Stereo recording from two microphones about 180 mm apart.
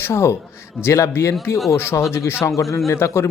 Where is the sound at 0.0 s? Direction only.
15° left (ahead or behind).